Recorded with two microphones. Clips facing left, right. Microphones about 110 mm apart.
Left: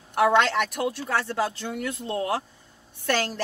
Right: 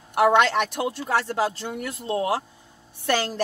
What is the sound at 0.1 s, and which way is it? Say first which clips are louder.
A woman's voice: right 2 dB; 15° right (ahead or behind).